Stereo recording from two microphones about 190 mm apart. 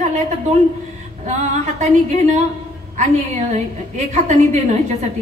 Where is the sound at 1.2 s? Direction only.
40° right (ahead or behind).